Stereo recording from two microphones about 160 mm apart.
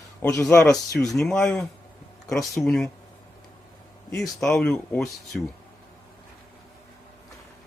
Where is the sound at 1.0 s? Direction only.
5° left (ahead or behind).